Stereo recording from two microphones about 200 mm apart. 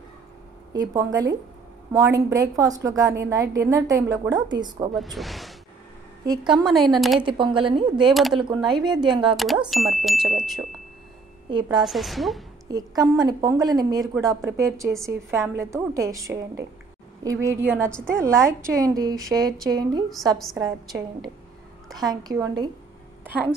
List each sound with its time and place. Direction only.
0.7 s a woman's voice: 20° right (ahead or behind)
4.9 s speech: centre (ahead or behind)
6.2 s a woman's voice: 20° right (ahead or behind)
6.5 s speech: centre (ahead or behind)
7.2 s a woman's voice: 25° right (ahead or behind)
8.1 s speech: centre (ahead or behind)
8.4 s a woman's voice: 20° right (ahead or behind)
9.4 s speech: centre (ahead or behind)
11.8 s speech: centre (ahead or behind)
12.6 s a woman's voice: 20° right (ahead or behind)
21.9 s a woman's voice: 20° right (ahead or behind)